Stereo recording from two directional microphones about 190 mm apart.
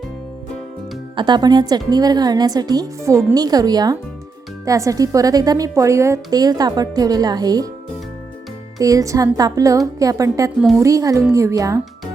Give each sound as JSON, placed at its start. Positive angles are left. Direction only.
{"t": 1.1, "sound": "a woman's voice", "side_deg": -25}
{"t": 8.8, "sound": "a woman's voice", "side_deg": -20}